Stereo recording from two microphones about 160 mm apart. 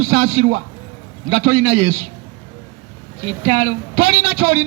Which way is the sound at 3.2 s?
30° right (ahead or behind).